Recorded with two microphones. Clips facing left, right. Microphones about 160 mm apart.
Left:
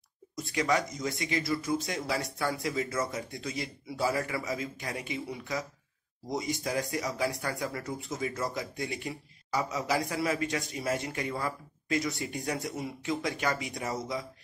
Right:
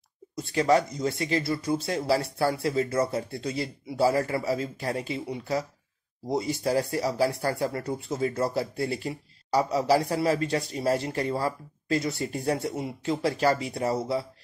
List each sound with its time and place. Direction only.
0.4 s speech: 30° right (ahead or behind)